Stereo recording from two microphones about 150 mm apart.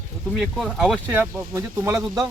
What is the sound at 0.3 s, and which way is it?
Speech, centre (ahead or behind).